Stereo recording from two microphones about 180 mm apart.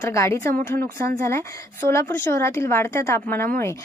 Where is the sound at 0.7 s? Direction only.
55° right (ahead or behind).